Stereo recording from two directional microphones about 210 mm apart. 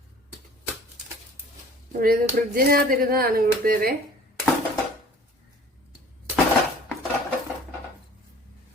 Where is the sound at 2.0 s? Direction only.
45° right (ahead or behind).